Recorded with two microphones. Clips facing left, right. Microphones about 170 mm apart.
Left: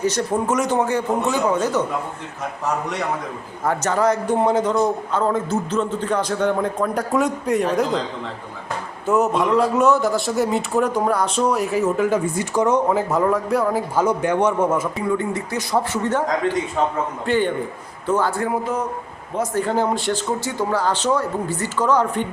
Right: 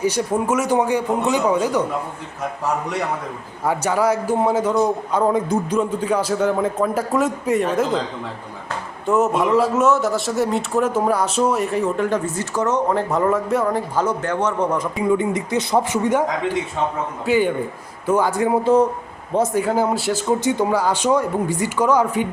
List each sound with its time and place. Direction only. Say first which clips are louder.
0.0 s speech: right 1 dB; 10° right (ahead or behind)
3.6 s speech: even; 10° right (ahead or behind)
9.0 s speech: right 1 dB; centre (ahead or behind)
14.9 s speech: right 3 dB; 20° right (ahead or behind)
17.2 s speech: right 3 dB; 10° right (ahead or behind)
19.5 s speech: right 1 dB; 10° right (ahead or behind)
20.4 s speech: right 3 dB; 20° right (ahead or behind)